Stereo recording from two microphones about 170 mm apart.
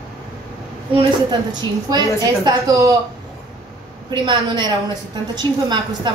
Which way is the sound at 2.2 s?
25° right (ahead or behind).